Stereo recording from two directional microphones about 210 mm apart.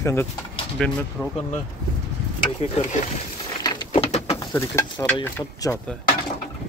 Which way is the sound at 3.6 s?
25° left (ahead or behind).